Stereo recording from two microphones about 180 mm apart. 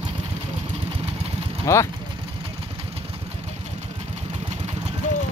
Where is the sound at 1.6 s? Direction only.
15° left (ahead or behind).